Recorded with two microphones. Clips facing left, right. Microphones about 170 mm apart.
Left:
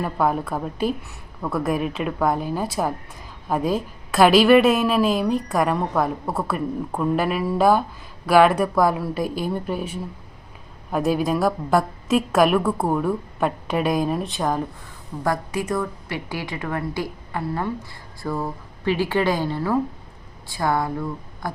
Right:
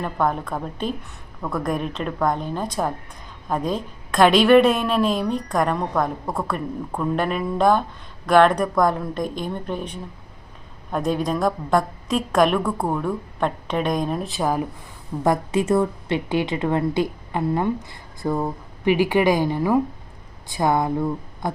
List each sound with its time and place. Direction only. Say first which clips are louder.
0.0 s a woman's voice: left 1 dB; 5° left (ahead or behind)
15.2 s a woman's voice: right 4 dB; 25° right (ahead or behind)